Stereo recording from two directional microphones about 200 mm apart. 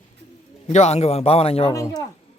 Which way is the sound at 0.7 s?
35° left (ahead or behind).